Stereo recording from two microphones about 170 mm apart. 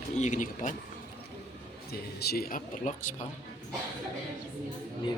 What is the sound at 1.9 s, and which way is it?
Speech, 70° left (ahead or behind).